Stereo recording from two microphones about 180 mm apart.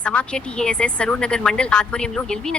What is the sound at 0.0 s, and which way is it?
A woman's voice, 5° left (ahead or behind).